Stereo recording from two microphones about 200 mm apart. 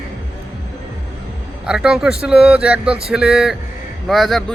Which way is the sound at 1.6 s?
5° right (ahead or behind).